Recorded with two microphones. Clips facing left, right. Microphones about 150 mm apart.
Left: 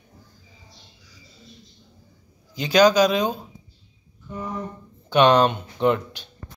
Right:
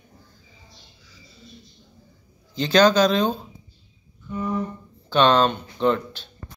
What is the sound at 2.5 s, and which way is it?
Speech, 10° left (ahead or behind).